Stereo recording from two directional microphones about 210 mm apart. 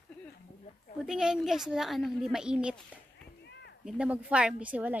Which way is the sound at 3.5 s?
55° left (ahead or behind).